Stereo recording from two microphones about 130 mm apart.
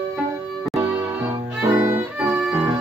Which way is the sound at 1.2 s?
15° right (ahead or behind).